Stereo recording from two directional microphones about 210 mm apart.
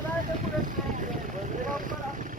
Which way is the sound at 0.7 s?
40° right (ahead or behind).